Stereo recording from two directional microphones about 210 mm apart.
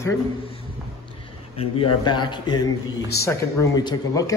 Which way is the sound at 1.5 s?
25° left (ahead or behind).